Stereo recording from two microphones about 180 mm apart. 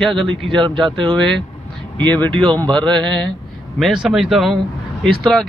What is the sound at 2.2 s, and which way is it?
Speech, 25° right (ahead or behind).